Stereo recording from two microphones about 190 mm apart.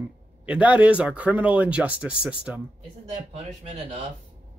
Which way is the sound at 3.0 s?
30° right (ahead or behind).